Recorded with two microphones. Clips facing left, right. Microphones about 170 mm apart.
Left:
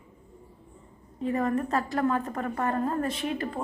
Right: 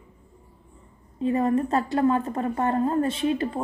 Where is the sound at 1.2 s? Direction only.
25° right (ahead or behind).